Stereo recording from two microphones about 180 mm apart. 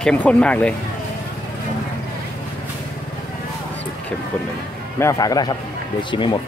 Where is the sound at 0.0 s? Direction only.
10° left (ahead or behind).